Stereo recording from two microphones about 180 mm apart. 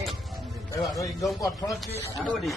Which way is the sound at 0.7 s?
20° left (ahead or behind).